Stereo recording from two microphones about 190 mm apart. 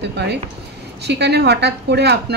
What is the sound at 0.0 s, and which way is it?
A woman's voice, 60° right (ahead or behind).